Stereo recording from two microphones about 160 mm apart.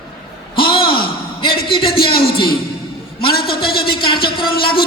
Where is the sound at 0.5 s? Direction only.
30° left (ahead or behind).